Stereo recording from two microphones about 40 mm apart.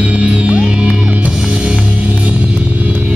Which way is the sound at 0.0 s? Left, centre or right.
Right.